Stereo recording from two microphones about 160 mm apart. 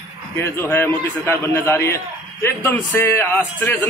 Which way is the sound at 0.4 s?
15° left (ahead or behind).